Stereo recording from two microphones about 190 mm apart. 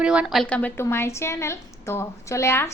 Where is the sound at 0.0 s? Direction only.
5° right (ahead or behind).